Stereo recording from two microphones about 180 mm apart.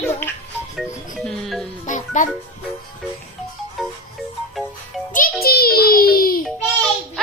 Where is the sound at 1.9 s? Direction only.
45° left (ahead or behind).